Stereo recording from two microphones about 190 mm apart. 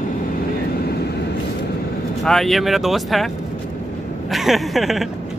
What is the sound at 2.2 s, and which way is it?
Speech, centre (ahead or behind).